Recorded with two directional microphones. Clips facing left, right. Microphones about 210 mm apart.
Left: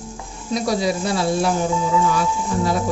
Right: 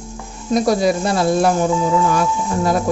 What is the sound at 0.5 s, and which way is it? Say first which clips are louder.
A woman's voice: right 5 dB; 50° right (ahead or behind).